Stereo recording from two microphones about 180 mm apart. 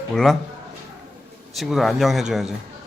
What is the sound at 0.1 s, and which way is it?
Speech, centre (ahead or behind).